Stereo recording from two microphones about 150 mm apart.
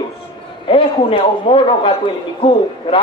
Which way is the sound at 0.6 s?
35° left (ahead or behind).